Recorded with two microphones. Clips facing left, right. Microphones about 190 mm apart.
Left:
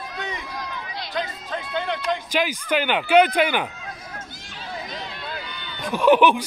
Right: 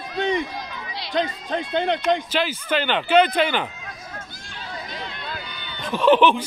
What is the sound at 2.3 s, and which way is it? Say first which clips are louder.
Speech: even; 10° left (ahead or behind).